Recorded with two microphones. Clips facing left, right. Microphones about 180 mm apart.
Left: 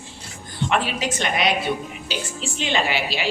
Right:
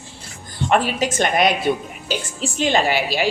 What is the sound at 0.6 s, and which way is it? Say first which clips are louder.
A woman's voice: right 4 dB; 45° right (ahead or behind).